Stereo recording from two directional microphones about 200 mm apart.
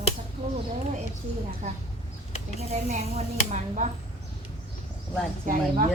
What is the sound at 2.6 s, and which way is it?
Speech, 35° right (ahead or behind).